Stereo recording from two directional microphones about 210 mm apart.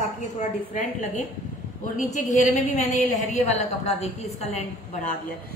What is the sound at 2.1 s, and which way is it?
A woman's voice, 35° left (ahead or behind).